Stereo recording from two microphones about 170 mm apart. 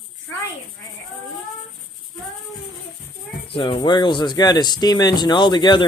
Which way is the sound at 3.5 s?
30° left (ahead or behind).